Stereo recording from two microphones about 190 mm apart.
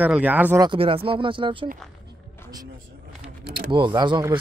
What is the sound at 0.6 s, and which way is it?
Speech, 25° right (ahead or behind).